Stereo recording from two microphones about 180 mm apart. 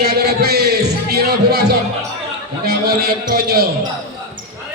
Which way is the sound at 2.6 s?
60° right (ahead or behind).